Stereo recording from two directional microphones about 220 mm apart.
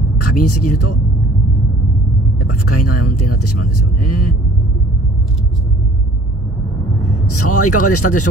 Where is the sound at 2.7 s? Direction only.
90° left.